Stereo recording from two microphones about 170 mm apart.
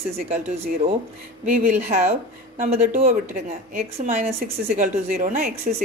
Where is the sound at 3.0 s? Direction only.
40° right (ahead or behind).